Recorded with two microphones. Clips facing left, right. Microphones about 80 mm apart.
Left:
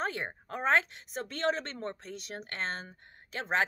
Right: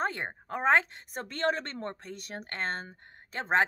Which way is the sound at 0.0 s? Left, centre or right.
Right.